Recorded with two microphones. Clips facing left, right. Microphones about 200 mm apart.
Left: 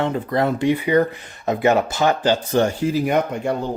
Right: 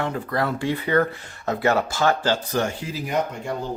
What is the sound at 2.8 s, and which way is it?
Speech, 60° left (ahead or behind).